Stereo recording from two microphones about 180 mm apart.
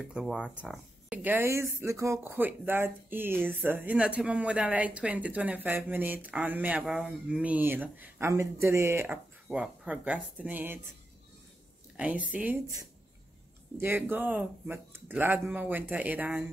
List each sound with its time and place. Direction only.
0.1 s speech: 5° right (ahead or behind)
12.0 s speech: 10° right (ahead or behind)
13.7 s speech: 10° right (ahead or behind)